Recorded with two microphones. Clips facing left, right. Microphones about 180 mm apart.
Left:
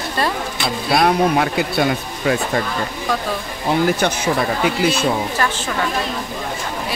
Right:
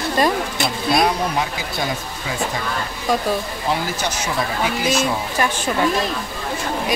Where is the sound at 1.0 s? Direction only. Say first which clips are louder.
Left 5 dB; 60° left (ahead or behind).